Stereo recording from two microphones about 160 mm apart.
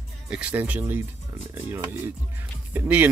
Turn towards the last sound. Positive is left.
turn(degrees=-10)  # may be behind; listen again after turning